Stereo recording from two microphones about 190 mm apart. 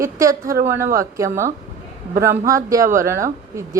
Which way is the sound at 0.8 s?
45° right (ahead or behind).